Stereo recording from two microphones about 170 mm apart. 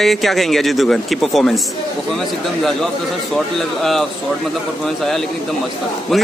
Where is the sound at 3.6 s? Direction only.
Centre (ahead or behind).